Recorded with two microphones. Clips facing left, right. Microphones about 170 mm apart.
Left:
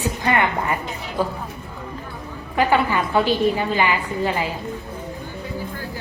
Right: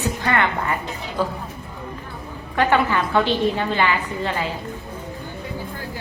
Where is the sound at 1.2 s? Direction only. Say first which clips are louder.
Left 1 dB; 15° left (ahead or behind).